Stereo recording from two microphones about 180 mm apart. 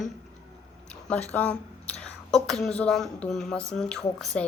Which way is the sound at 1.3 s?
10° left (ahead or behind).